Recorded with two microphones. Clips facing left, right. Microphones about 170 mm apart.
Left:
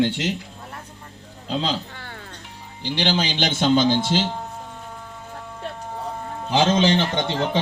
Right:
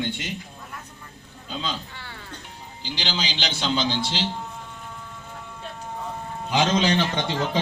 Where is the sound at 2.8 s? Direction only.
60° left (ahead or behind).